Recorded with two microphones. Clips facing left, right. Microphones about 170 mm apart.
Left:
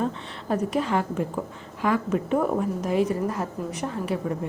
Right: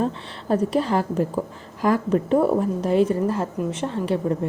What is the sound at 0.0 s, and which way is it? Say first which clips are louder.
A woman's voice: right 3 dB; 30° right (ahead or behind).